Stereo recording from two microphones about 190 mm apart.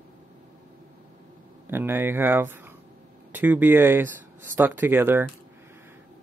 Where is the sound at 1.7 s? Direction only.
10° right (ahead or behind).